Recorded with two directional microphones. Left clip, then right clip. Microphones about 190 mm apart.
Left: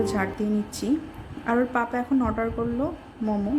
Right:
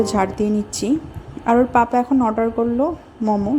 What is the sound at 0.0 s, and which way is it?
A woman's voice, 30° right (ahead or behind).